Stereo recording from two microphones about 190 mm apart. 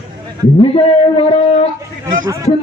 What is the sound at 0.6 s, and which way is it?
A man's voice, 30° left (ahead or behind).